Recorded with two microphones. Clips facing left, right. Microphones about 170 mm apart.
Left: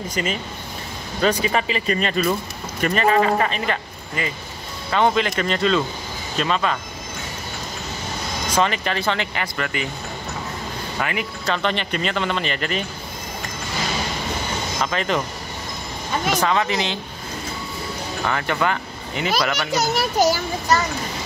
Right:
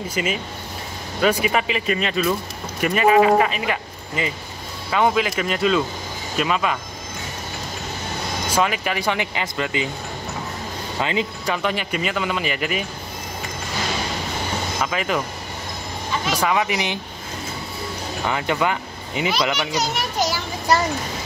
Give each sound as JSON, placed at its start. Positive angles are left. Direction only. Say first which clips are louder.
{"t": 0.1, "sound": "speech", "louder": "right 1 dB", "side_deg": -5}
{"t": 4.2, "sound": "speech", "louder": "right 2 dB", "side_deg": -20}
{"t": 4.9, "sound": "speech", "louder": "even", "side_deg": -5}
{"t": 8.5, "sound": "speech", "louder": "left 1 dB", "side_deg": -10}
{"t": 11.0, "sound": "speech", "louder": "right 3 dB", "side_deg": -20}
{"t": 14.8, "sound": "speech", "louder": "left 1 dB", "side_deg": -5}
{"t": 16.3, "sound": "speech", "louder": "right 1 dB", "side_deg": -10}
{"t": 18.2, "sound": "speech", "louder": "right 1 dB", "side_deg": -15}
{"t": 19.7, "sound": "a child's voice", "louder": "left 3 dB", "side_deg": 40}